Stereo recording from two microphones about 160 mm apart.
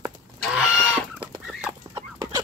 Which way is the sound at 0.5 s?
5° right (ahead or behind).